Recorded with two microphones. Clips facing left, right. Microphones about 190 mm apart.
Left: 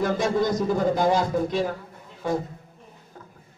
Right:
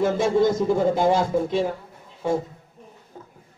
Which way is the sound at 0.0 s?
25° right (ahead or behind).